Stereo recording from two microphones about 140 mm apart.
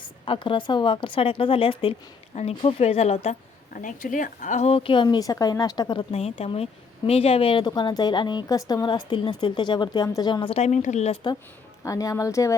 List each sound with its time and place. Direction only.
0.3 s a woman's voice: 35° left (ahead or behind)
3.7 s speech: 70° left (ahead or behind); by 5.0 s 40° left (ahead or behind)
5.0 s a woman's voice: 25° left (ahead or behind)
10.5 s speech: 55° left (ahead or behind)
11.9 s a woman's voice: 25° left (ahead or behind)